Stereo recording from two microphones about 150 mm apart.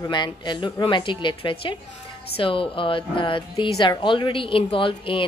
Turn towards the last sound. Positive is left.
turn(degrees=35)  # may be behind; listen again after turning